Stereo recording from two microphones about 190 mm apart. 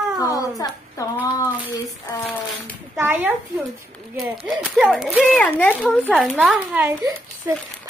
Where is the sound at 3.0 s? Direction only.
10° right (ahead or behind); by 5.9 s 10° left (ahead or behind).